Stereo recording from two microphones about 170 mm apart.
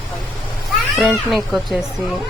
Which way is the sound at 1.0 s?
5° right (ahead or behind).